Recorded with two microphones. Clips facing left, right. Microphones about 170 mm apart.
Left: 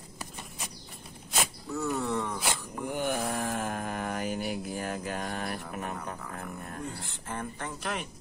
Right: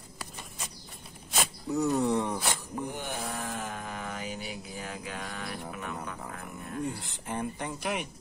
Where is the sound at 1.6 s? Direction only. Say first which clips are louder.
Right 6 dB; 20° right (ahead or behind).